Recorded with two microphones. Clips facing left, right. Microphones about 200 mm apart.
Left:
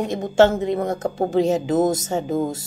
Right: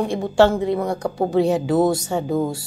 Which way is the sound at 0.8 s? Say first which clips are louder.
Even; 45° left (ahead or behind).